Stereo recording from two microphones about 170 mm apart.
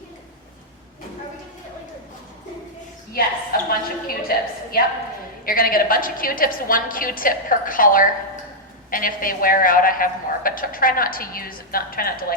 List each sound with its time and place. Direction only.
3.1 s a woman's voice: 60° left (ahead or behind)